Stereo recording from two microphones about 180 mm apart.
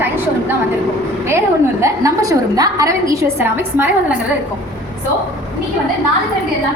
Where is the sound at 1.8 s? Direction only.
20° right (ahead or behind).